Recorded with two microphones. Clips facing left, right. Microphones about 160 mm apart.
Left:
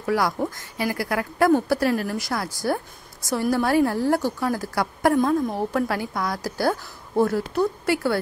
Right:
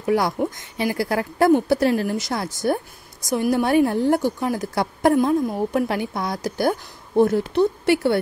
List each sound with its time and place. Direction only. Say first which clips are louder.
0.0 s a woman's voice: right 3 dB; 20° right (ahead or behind)